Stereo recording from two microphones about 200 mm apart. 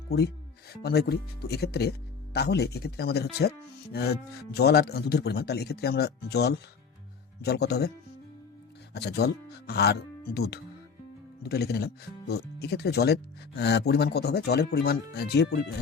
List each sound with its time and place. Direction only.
0.8 s speech: 55° left (ahead or behind)